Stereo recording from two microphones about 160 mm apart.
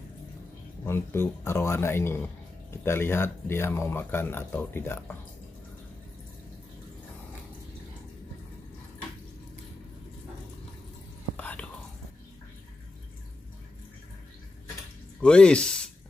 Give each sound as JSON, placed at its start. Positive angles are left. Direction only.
{"t": 0.8, "sound": "speech", "side_deg": 15}
{"t": 11.3, "sound": "whispering", "side_deg": 10}
{"t": 15.1, "sound": "speech", "side_deg": 5}